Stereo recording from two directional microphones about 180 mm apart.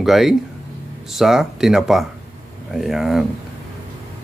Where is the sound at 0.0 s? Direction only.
Centre (ahead or behind).